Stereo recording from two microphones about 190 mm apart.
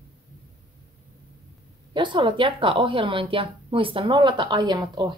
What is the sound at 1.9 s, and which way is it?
A woman's voice, 25° right (ahead or behind).